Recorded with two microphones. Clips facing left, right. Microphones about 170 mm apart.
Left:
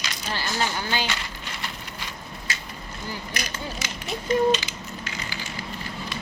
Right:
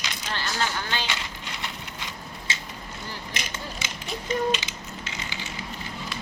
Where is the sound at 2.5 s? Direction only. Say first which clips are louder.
Even; 25° right (ahead or behind).